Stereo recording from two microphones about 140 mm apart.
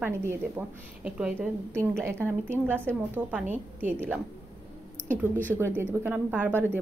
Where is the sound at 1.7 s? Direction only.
20° right (ahead or behind).